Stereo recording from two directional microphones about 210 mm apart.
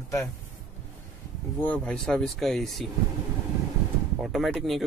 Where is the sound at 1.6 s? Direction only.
5° left (ahead or behind).